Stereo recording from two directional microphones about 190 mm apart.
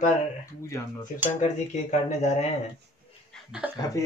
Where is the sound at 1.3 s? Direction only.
40° left (ahead or behind).